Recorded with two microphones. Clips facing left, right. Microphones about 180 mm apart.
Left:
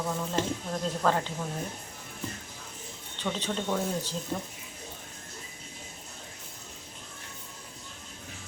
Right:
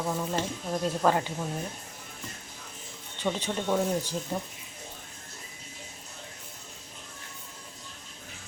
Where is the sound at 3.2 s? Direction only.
20° right (ahead or behind).